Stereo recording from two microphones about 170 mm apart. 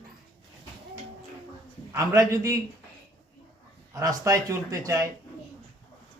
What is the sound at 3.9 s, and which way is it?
A man's voice, 20° right (ahead or behind).